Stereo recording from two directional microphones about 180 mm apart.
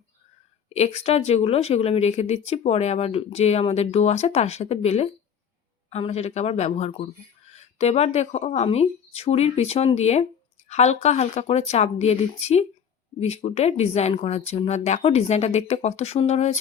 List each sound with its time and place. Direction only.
0.7 s speech: 35° left (ahead or behind)